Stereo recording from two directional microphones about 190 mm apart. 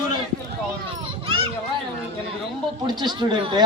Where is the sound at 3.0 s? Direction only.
25° right (ahead or behind).